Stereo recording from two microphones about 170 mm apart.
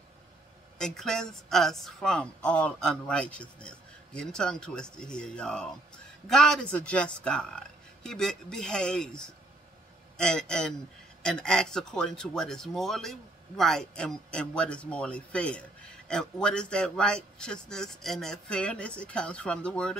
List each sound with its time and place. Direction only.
0.7 s speech: 5° left (ahead or behind)